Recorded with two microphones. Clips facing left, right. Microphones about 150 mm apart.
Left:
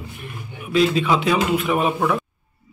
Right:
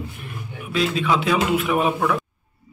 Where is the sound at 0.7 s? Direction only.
Centre (ahead or behind).